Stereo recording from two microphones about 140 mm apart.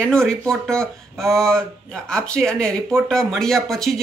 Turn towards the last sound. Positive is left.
turn(degrees=5)  # may be behind; listen again after turning